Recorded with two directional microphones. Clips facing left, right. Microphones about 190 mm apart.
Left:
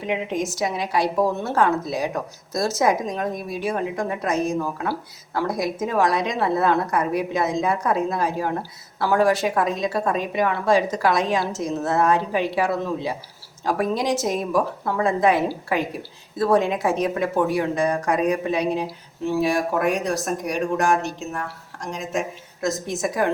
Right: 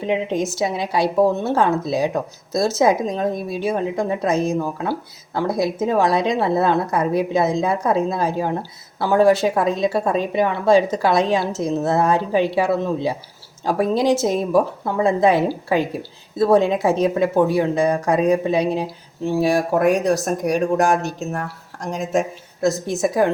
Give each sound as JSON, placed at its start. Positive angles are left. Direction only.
{"t": 0.0, "sound": "a woman's voice", "side_deg": -30}